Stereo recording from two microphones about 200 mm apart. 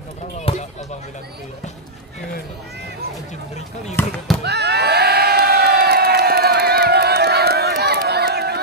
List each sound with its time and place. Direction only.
0.4 s basketball bounce: 35° left (ahead or behind)
4.0 s speech: 10° left (ahead or behind)
4.4 s crowd: 55° right (ahead or behind)